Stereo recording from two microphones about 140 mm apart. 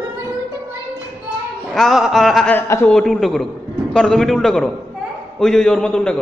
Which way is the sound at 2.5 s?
20° left (ahead or behind).